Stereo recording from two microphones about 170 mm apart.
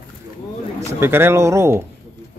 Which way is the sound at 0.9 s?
15° right (ahead or behind).